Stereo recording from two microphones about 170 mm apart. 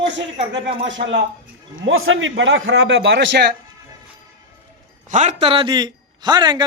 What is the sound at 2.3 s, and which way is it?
A man's voice, 90° right.